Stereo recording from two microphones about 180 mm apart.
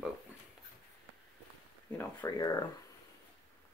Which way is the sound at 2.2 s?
20° left (ahead or behind).